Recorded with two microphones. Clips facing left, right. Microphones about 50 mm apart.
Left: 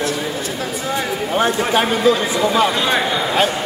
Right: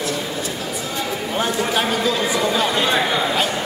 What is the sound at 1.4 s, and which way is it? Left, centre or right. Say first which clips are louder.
Speech: left 4 dB; left.